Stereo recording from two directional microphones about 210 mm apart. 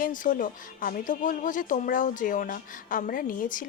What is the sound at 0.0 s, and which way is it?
Speech, 40° left (ahead or behind).